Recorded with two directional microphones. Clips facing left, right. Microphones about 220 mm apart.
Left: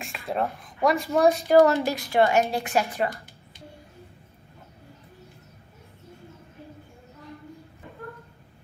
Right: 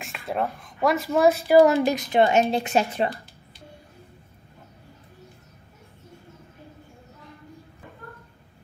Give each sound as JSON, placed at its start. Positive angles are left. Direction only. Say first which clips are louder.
{"t": 0.0, "sound": "a woman's voice", "louder": "even", "side_deg": 0}